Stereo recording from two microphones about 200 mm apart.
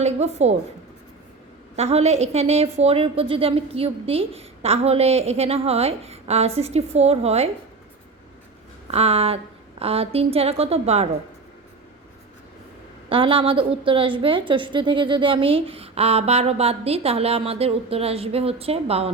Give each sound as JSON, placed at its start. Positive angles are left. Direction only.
{"t": 0.0, "sound": "a woman's voice", "side_deg": -35}
{"t": 1.7, "sound": "a woman's voice", "side_deg": -30}
{"t": 8.9, "sound": "a woman's voice", "side_deg": -30}
{"t": 13.1, "sound": "a woman's voice", "side_deg": -25}